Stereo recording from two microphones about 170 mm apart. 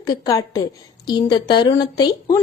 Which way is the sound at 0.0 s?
20° left (ahead or behind).